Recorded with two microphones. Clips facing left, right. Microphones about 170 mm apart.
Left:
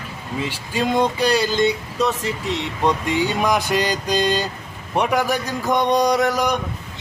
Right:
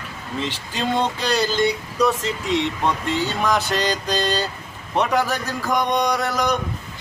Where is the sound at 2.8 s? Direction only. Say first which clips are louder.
Left 3 dB; 15° left (ahead or behind).